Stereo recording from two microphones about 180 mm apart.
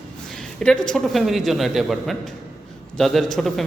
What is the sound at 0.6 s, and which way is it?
A man's voice, 5° left (ahead or behind).